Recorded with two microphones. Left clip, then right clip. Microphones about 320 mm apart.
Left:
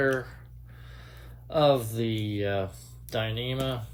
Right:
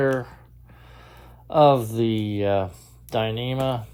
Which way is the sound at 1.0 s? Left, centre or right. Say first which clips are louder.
Right 7 dB; centre.